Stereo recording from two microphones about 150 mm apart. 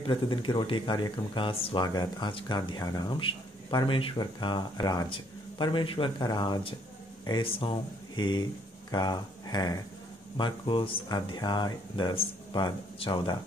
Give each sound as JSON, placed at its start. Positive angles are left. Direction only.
{"t": 0.0, "sound": "speech", "side_deg": 35}